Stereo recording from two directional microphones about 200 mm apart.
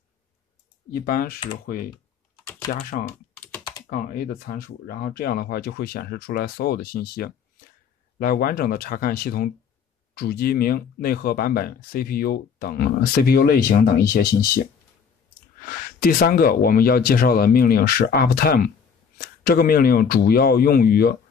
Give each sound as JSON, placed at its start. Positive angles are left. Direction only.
{"t": 0.9, "sound": "speech", "side_deg": 45}
{"t": 2.7, "sound": "speech", "side_deg": 45}
{"t": 15.7, "sound": "speech", "side_deg": 45}